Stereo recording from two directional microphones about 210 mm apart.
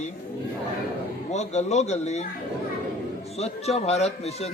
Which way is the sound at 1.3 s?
35° left (ahead or behind).